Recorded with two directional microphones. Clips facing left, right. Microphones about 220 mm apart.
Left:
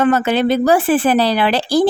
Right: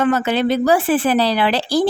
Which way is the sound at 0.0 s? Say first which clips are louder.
Left 2 dB; 50° left (ahead or behind).